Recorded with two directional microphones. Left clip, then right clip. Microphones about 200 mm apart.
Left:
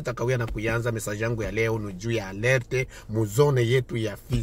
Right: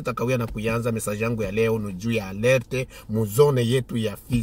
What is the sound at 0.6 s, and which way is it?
A man's voice, 15° right (ahead or behind).